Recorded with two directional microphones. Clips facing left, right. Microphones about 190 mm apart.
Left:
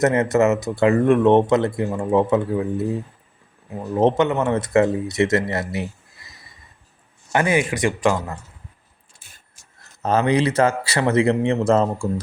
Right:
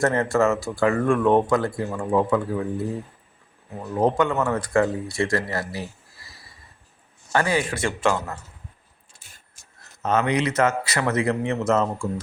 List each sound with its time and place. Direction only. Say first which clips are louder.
0.0 s speech: left 3 dB; 20° left (ahead or behind)
3.9 s speech: left 3 dB; 25° left (ahead or behind)
7.3 s speech: left 3 dB; 20° left (ahead or behind)
10.0 s a man's voice: left 4 dB; 35° left (ahead or behind)